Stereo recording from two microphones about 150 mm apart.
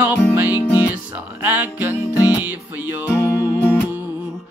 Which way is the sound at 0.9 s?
10° right (ahead or behind).